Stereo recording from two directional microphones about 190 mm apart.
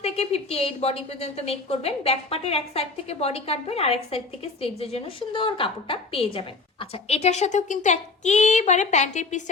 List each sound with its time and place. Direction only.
0.0 s a woman's voice: 35° left (ahead or behind)